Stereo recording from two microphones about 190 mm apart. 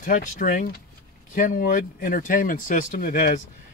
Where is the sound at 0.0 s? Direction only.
45° left (ahead or behind).